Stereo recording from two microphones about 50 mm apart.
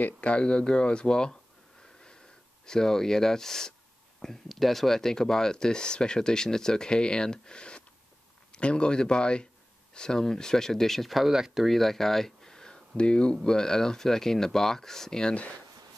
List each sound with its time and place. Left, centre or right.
0.0 s speech: left
2.6 s speech: centre